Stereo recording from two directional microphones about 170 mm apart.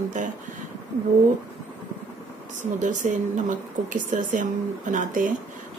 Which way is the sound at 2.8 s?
45° right (ahead or behind).